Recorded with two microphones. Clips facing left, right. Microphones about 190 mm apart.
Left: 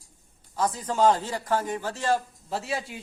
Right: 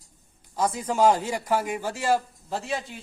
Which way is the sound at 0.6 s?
10° right (ahead or behind).